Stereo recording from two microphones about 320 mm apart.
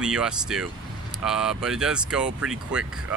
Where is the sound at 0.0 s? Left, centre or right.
Centre.